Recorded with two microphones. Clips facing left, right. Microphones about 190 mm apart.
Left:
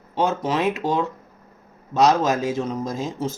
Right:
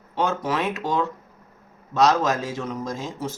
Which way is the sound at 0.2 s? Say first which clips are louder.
Left 2 dB; 20° left (ahead or behind).